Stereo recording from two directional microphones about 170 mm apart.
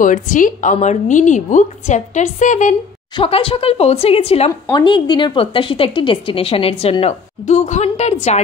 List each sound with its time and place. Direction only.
0.0 s a woman's voice: 50° left (ahead or behind)
3.2 s speech: 30° left (ahead or behind)
4.5 s speech: 20° left (ahead or behind); by 8.4 s 40° left (ahead or behind)